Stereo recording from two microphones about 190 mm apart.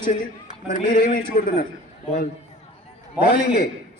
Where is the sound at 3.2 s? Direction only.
55° left (ahead or behind).